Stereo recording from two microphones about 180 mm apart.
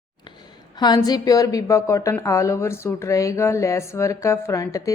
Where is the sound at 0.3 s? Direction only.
25° left (ahead or behind).